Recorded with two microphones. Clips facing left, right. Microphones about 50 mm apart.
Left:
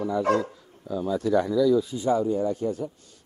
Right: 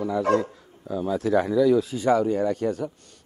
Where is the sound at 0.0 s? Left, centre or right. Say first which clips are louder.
Right 1 dB; right.